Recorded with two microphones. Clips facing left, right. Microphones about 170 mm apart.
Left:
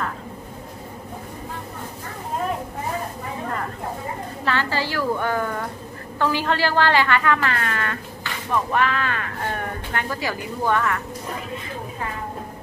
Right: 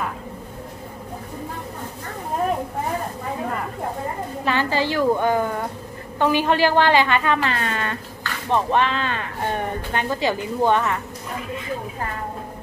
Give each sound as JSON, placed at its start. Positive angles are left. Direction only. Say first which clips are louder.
{"t": 4.5, "sound": "speech", "louder": "right 3 dB", "side_deg": -15}